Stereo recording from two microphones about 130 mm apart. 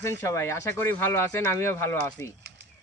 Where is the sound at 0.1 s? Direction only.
20° left (ahead or behind).